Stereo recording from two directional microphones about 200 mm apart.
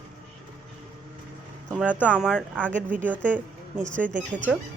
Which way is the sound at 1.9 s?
10° left (ahead or behind).